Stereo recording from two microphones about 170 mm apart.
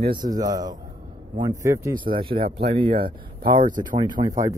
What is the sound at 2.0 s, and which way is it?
Speech, 30° right (ahead or behind).